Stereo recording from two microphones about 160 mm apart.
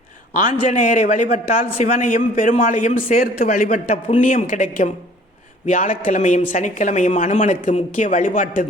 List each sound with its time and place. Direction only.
0.3 s a man's voice: 50° left (ahead or behind)